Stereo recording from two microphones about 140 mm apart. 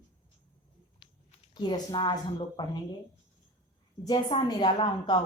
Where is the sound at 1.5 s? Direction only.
35° left (ahead or behind).